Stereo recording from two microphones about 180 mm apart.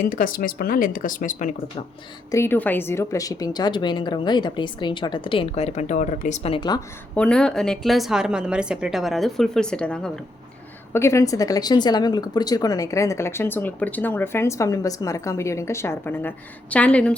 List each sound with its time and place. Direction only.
0.0 s speech: 50° left (ahead or behind)
2.3 s a woman's voice: 15° left (ahead or behind)
7.2 s speech: 5° left (ahead or behind)
10.9 s speech: 15° left (ahead or behind)